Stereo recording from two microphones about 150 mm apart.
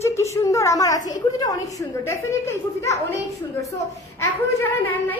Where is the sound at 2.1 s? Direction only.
20° left (ahead or behind).